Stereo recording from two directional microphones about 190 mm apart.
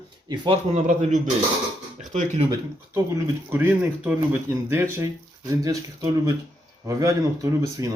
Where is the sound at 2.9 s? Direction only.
15° right (ahead or behind).